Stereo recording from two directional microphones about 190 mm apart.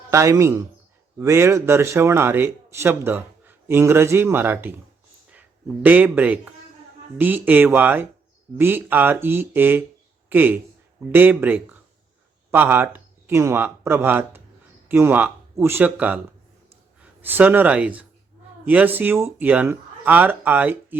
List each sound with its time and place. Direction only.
0.1 s speech: 15° right (ahead or behind)
17.2 s speech: 10° right (ahead or behind)